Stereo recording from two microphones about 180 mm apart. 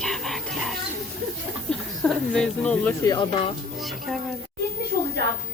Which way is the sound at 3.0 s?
25° left (ahead or behind).